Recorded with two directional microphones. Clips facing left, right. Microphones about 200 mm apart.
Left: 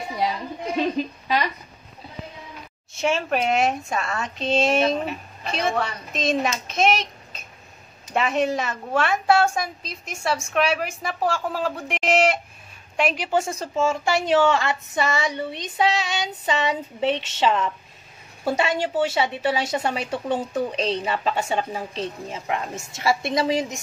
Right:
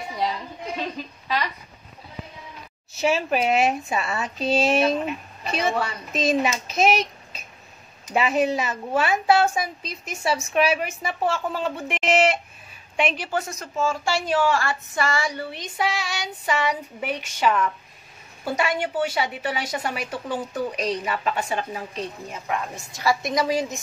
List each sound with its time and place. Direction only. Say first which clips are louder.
0.7 s a sound: left 10 dB; 20° left (ahead or behind)
3.0 s a woman's voice: right 1 dB; 5° right (ahead or behind)
8.1 s a woman's voice: right 1 dB; 5° right (ahead or behind)
13.1 s a woman's voice: left 4 dB; 15° left (ahead or behind)
13.4 s a woman's voice: left 4 dB; 30° left (ahead or behind)